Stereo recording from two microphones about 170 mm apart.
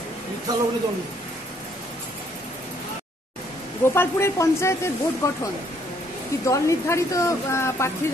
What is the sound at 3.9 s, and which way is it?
A man's voice, 15° left (ahead or behind).